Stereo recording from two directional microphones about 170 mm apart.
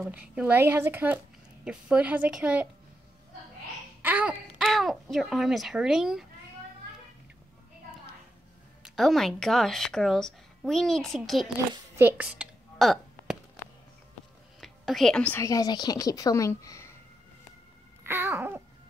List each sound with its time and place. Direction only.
0.0 s speech: 10° right (ahead or behind)
4.0 s speech: 10° right (ahead or behind)
8.8 s speech: centre (ahead or behind)
12.0 s a sound: 10° right (ahead or behind)
14.6 s music: centre (ahead or behind)
15.4 s a woman's voice: 20° left (ahead or behind)
18.0 s babbling: 15° right (ahead or behind)